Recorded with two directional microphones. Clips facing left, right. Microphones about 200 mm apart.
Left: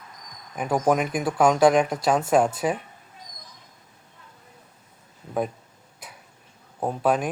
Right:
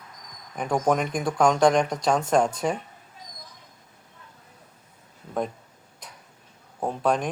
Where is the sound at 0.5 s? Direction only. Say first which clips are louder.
Left 1 dB; 5° left (ahead or behind).